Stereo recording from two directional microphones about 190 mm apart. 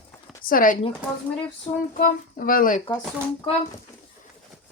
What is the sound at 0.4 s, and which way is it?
Speech, 50° left (ahead or behind).